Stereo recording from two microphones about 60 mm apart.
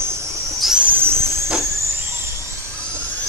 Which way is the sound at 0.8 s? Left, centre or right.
Right.